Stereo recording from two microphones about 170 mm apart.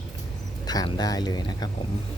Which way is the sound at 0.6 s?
20° left (ahead or behind).